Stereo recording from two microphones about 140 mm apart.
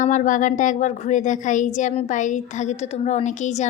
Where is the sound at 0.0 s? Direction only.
65° left (ahead or behind).